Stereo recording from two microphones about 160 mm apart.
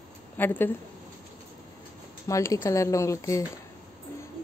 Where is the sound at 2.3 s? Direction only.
20° left (ahead or behind).